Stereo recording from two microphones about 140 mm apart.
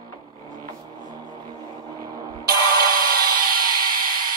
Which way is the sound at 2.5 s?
90° right.